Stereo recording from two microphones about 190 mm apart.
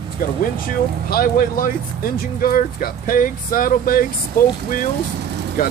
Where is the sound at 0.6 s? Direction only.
50° left (ahead or behind).